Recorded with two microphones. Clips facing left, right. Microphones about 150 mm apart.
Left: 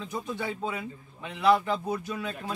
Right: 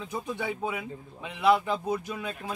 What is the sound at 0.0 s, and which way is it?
A man's voice, 15° right (ahead or behind).